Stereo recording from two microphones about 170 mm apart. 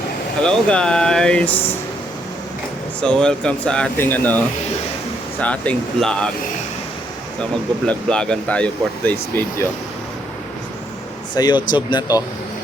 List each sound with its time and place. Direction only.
0.4 s speech: 5° left (ahead or behind)
3.0 s speech: 5° left (ahead or behind)
7.9 s speech: 5° left (ahead or behind)
11.4 s speech: 20° left (ahead or behind)